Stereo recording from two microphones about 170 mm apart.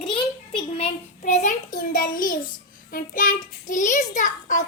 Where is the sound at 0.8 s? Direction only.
45° left (ahead or behind).